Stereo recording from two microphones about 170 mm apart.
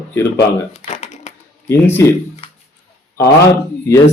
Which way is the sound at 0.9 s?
40° left (ahead or behind).